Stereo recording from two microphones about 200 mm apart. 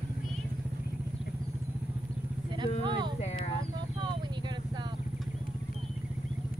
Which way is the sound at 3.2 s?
35° left (ahead or behind).